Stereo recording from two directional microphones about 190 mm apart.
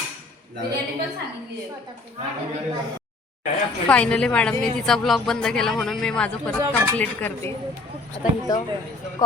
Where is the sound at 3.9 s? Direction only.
5° left (ahead or behind).